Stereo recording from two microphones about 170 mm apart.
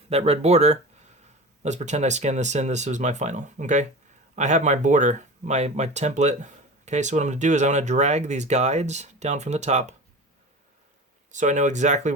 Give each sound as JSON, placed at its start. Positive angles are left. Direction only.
{"t": 0.1, "sound": "speech", "side_deg": -35}
{"t": 11.3, "sound": "speech", "side_deg": -45}